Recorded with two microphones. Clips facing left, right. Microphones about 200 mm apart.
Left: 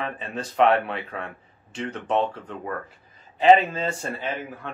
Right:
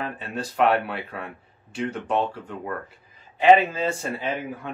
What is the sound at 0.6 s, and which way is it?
Speech, 5° right (ahead or behind).